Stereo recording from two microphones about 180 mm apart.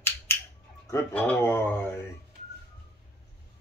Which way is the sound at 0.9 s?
10° left (ahead or behind).